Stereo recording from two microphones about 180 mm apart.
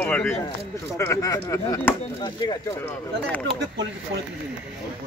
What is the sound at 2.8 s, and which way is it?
Speech, 10° left (ahead or behind).